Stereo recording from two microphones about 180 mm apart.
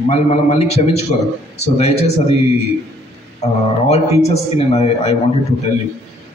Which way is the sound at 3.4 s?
35° left (ahead or behind).